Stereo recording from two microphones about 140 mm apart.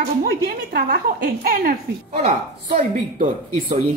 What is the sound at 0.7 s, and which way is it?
A woman's voice, 90° right.